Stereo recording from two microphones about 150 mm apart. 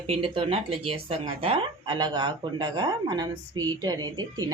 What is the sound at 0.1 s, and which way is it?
A woman's voice, 35° right (ahead or behind).